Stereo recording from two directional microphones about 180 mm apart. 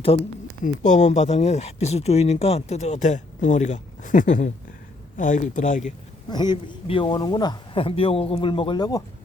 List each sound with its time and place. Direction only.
0.6 s speech: 45° left (ahead or behind)
6.3 s a man's voice: 25° left (ahead or behind)